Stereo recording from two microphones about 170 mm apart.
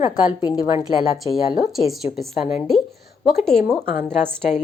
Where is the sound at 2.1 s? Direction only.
45° left (ahead or behind).